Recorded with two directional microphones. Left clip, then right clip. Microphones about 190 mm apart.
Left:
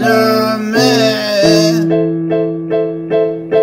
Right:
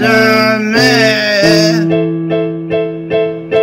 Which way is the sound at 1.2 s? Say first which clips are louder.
Right 1 dB; 20° left (ahead or behind).